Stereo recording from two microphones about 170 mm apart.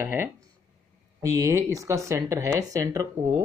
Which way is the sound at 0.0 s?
15° right (ahead or behind).